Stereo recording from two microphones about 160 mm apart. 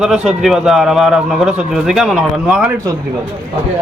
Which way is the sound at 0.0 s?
Centre (ahead or behind).